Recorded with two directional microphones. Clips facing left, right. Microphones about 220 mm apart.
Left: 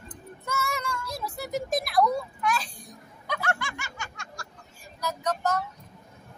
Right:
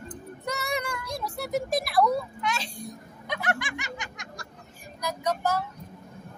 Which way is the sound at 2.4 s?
25° right (ahead or behind).